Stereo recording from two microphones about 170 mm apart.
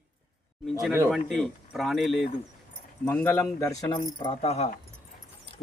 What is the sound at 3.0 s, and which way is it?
Speech, 10° left (ahead or behind).